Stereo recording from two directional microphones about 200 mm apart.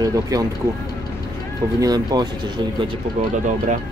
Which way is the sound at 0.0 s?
15° right (ahead or behind).